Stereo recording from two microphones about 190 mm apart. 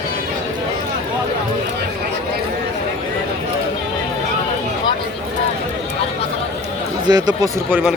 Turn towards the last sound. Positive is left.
turn(degrees=-20)  # may be behind; listen again after turning